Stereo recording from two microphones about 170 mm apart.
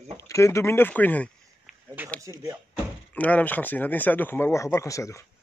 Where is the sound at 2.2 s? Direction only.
20° right (ahead or behind).